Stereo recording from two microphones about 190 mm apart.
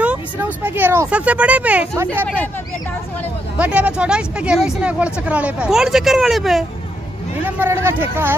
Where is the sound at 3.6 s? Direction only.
5° right (ahead or behind).